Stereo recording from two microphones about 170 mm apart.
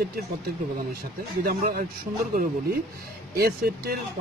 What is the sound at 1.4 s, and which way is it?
Speech, 60° right (ahead or behind).